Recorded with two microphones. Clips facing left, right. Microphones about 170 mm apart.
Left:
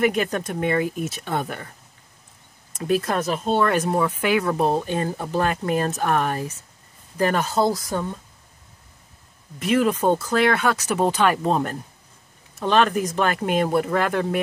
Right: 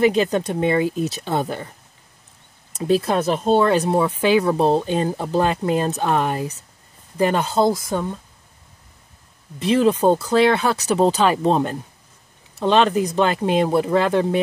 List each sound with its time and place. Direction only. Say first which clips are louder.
0.0 s speech: right 4 dB; 30° right (ahead or behind)
3.3 s speech: right 4 dB; 35° right (ahead or behind)
9.6 s speech: right 3 dB; 30° right (ahead or behind)